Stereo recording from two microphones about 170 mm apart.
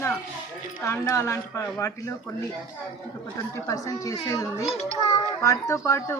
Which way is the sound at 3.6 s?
20° left (ahead or behind).